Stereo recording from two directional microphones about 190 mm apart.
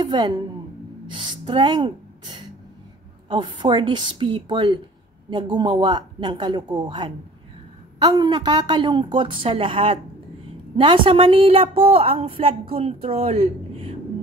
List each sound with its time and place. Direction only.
1.1 s a woman's voice: 25° right (ahead or behind)